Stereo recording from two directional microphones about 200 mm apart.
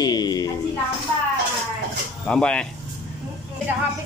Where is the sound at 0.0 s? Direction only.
20° left (ahead or behind).